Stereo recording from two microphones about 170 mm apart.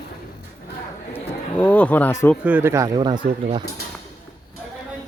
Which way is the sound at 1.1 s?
10° left (ahead or behind).